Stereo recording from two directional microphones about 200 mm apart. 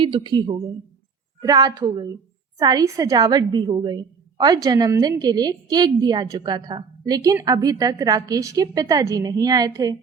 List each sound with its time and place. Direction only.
0.3 s a woman's voice: 20° right (ahead or behind)